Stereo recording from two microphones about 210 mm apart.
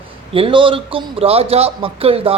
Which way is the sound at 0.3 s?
25° right (ahead or behind).